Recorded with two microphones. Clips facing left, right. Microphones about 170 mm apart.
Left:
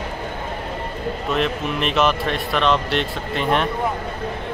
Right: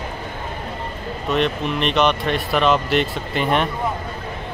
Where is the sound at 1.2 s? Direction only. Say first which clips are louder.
Right 3 dB; centre (ahead or behind).